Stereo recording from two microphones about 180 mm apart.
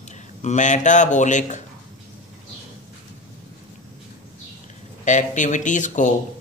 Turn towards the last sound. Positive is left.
turn(degrees=45)  # may be behind; listen again after turning